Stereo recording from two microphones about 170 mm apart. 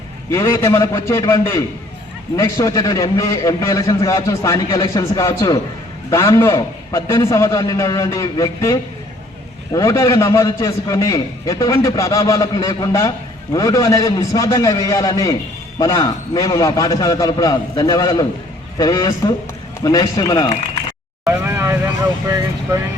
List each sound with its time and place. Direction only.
0.3 s a man's voice: 15° left (ahead or behind)
21.2 s vehicle: 15° right (ahead or behind)